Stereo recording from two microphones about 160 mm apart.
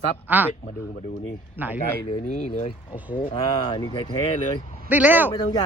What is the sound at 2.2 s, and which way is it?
Speech, 50° left (ahead or behind).